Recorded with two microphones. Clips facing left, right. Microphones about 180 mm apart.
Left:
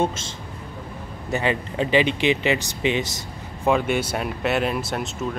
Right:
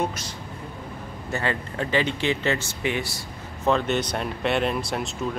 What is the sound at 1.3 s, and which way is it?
Speech, 15° left (ahead or behind).